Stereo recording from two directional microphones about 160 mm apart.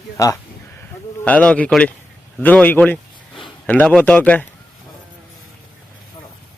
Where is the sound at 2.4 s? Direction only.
10° left (ahead or behind).